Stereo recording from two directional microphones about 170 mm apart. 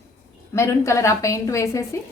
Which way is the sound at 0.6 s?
15° left (ahead or behind).